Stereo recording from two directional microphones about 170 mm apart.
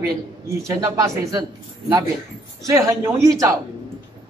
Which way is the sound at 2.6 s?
15° right (ahead or behind).